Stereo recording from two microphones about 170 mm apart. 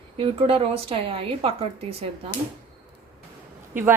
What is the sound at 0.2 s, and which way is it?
Speech, 30° right (ahead or behind).